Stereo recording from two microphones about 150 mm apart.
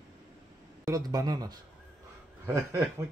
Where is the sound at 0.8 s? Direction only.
25° right (ahead or behind).